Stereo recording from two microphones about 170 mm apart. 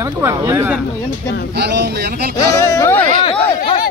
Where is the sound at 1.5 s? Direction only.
75° right (ahead or behind).